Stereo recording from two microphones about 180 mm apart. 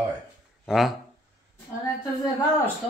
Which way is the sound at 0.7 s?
Centre (ahead or behind).